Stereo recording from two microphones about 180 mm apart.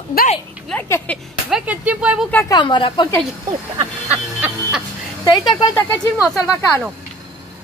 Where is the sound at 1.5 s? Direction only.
5° right (ahead or behind).